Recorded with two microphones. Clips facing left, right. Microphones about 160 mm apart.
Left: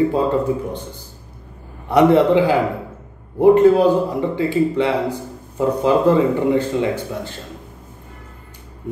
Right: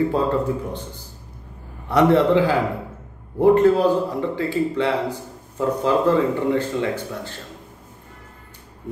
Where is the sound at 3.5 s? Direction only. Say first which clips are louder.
Left 4 dB; 15° left (ahead or behind).